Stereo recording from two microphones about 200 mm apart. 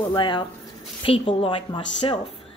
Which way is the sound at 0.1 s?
25° left (ahead or behind).